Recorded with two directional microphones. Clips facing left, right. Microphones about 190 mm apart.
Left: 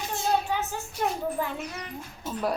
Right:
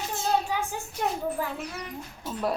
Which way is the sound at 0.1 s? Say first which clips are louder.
Left 1 dB; centre (ahead or behind).